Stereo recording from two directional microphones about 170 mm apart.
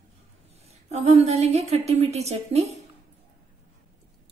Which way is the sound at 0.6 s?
40° right (ahead or behind).